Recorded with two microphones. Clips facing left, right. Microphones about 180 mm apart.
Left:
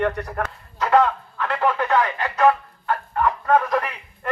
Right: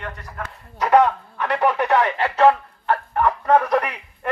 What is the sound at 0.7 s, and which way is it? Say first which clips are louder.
Speech: right 2 dB; 15° right (ahead or behind).